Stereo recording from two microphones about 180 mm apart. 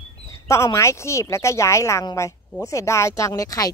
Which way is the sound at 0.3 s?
15° left (ahead or behind).